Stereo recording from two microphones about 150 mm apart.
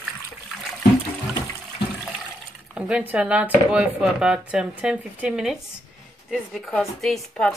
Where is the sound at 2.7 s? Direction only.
10° right (ahead or behind).